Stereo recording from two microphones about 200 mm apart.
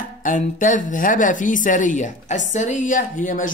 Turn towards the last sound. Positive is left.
turn(degrees=40)  # may be behind; listen again after turning